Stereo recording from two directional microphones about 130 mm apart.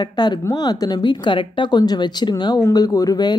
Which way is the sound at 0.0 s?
35° left (ahead or behind).